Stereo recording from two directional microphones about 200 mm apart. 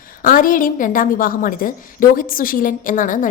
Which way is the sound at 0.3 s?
45° left (ahead or behind).